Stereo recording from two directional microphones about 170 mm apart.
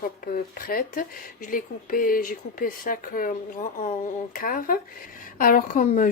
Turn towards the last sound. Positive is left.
turn(degrees=50)  # may be behind; listen again after turning